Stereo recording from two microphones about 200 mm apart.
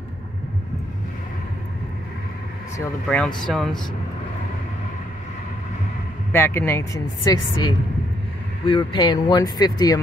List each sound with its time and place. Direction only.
3.1 s speech: 5° left (ahead or behind)
6.3 s speech: 10° left (ahead or behind)